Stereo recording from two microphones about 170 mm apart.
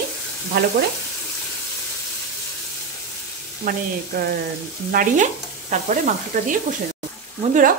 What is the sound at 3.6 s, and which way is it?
Speech, 60° right (ahead or behind).